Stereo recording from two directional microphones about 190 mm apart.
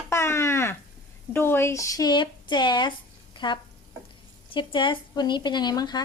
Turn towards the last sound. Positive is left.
turn(degrees=20)  # may be behind; listen again after turning